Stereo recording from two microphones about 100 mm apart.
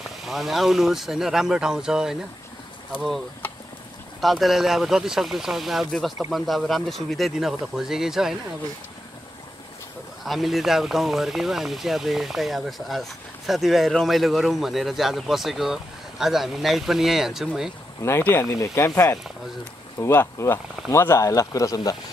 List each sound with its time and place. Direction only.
0.2 s speech: centre (ahead or behind)
4.2 s speech: centre (ahead or behind)
10.2 s speech: centre (ahead or behind)
18.0 s speech: 25° left (ahead or behind)
20.0 s speech: 25° left (ahead or behind)